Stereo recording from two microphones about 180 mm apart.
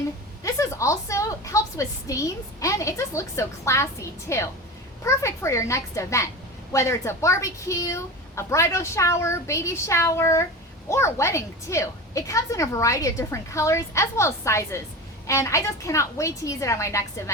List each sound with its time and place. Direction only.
0.4 s a woman's voice: 15° left (ahead or behind)